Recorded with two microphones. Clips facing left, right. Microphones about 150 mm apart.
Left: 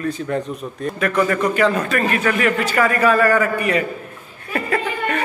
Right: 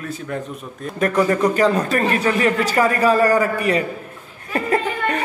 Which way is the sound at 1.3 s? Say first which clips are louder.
Right 1 dB; 35° right (ahead or behind).